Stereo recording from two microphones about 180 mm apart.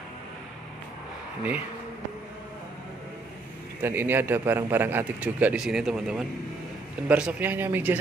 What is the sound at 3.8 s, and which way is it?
Speech, 10° right (ahead or behind).